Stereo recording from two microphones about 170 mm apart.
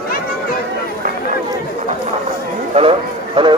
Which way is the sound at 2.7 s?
35° right (ahead or behind).